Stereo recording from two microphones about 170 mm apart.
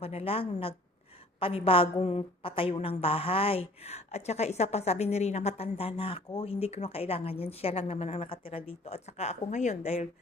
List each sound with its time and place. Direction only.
0.0 s a woman's voice: 35° left (ahead or behind)